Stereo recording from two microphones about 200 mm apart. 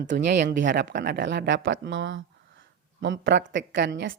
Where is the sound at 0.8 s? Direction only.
60° right (ahead or behind).